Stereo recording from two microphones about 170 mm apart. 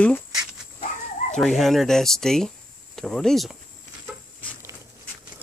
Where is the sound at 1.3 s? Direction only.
Centre (ahead or behind).